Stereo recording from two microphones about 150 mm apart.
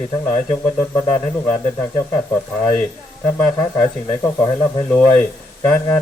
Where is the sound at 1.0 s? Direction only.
25° left (ahead or behind).